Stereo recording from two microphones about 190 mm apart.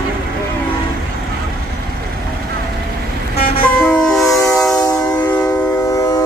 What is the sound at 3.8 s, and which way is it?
Train, 5° left (ahead or behind).